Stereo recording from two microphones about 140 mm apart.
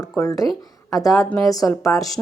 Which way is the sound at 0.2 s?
25° left (ahead or behind).